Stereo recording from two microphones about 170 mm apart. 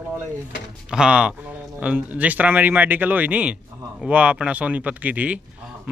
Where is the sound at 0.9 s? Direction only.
5° right (ahead or behind).